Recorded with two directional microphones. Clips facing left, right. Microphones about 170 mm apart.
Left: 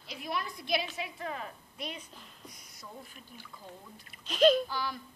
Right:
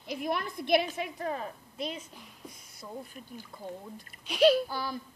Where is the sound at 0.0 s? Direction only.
50° right (ahead or behind); by 2.0 s 25° right (ahead or behind).